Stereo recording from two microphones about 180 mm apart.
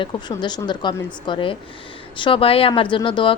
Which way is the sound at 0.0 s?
25° left (ahead or behind).